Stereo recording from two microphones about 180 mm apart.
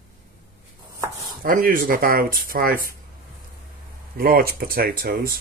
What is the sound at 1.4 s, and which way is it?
Speech, 50° right (ahead or behind).